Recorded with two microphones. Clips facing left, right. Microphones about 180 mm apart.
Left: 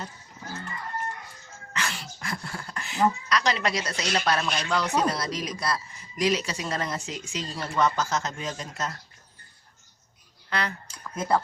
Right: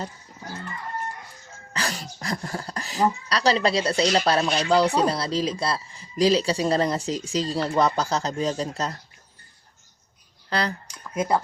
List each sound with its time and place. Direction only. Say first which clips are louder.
1.7 s speech: right 3 dB; 40° right (ahead or behind)
10.5 s speech: right 4 dB; 35° right (ahead or behind)
10.8 s a sound: right 3 dB; 15° right (ahead or behind)